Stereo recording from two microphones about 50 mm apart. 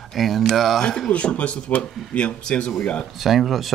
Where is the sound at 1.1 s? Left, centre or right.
Left.